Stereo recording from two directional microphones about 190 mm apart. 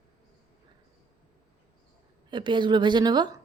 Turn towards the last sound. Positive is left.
turn(degrees=-20)  # may be behind; listen again after turning